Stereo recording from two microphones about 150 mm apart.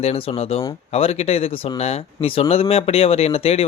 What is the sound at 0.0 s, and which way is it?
Speech, 45° left (ahead or behind).